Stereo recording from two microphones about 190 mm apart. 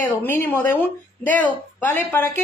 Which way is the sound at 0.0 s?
10° left (ahead or behind).